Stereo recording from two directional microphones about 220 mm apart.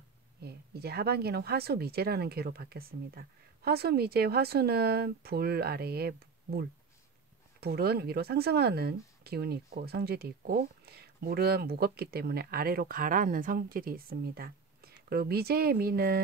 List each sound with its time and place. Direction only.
0.4 s speech: 45° right (ahead or behind)
7.6 s speech: 45° right (ahead or behind)